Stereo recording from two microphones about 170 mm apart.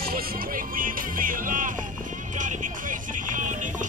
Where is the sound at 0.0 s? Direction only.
60° right (ahead or behind).